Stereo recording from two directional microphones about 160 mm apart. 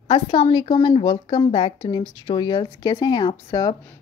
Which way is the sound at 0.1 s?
30° left (ahead or behind).